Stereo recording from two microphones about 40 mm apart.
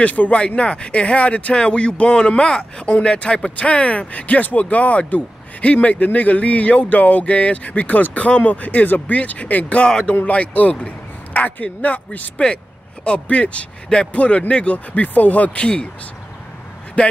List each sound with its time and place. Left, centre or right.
0.0 s speech: left
9.8 s speech: centre
10.2 s speech: left
13.0 s speech: left
15.6 s speech: left
17.0 s speech: left